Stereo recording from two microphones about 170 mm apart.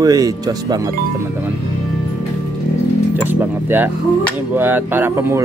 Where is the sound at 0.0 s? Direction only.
20° right (ahead or behind).